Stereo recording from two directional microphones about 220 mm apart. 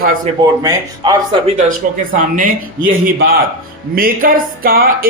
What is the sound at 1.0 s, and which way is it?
Speech, 20° right (ahead or behind).